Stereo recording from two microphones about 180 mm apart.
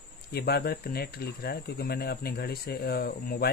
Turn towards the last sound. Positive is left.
turn(degrees=60)  # may be behind; listen again after turning